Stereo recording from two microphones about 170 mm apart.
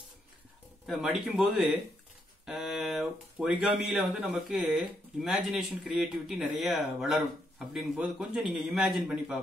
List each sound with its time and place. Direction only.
0.8 s speech: 5° right (ahead or behind)